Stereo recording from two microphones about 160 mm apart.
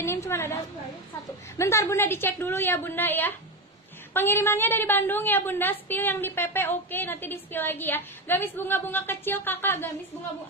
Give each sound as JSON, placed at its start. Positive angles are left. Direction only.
{"t": 0.0, "sound": "a woman's voice", "side_deg": 15}
{"t": 1.6, "sound": "a woman's voice", "side_deg": 15}